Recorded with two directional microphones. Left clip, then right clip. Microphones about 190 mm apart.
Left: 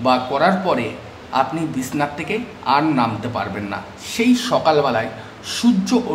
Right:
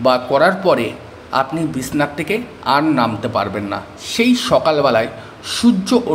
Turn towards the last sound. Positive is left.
turn(degrees=-15)  # may be behind; listen again after turning